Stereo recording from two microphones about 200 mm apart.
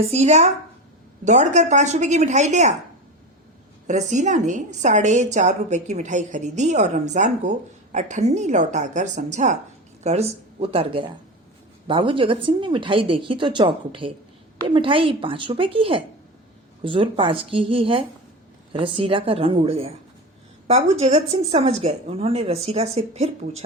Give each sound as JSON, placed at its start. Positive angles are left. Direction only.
{"t": 0.1, "sound": "a woman's voice", "side_deg": -35}
{"t": 3.8, "sound": "a woman's voice", "side_deg": -35}